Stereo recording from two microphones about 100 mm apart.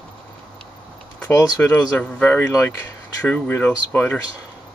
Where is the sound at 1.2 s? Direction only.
15° left (ahead or behind).